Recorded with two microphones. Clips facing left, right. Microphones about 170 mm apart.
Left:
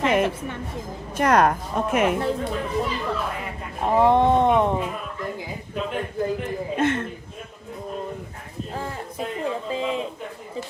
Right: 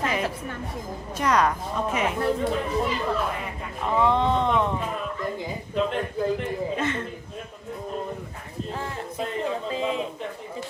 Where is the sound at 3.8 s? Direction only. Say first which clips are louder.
Left 5 dB; 50° left (ahead or behind).